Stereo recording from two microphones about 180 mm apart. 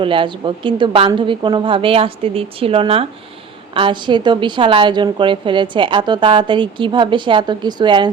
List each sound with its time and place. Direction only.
0.0 s a woman's voice: 30° right (ahead or behind)